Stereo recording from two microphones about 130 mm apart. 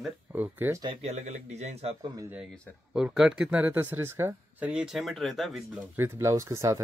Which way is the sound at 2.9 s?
5° right (ahead or behind).